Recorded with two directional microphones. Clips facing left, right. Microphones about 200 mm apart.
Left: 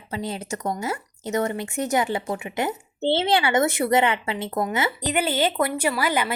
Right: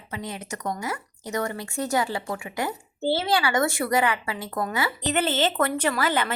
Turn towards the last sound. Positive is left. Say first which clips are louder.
# left 1 dB
turn(degrees=10)  # may be behind; listen again after turning